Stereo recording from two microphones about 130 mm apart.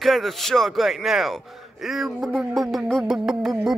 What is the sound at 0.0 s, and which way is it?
A man's voice, centre (ahead or behind).